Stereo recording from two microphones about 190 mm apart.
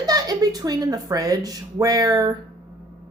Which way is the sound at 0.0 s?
20° right (ahead or behind).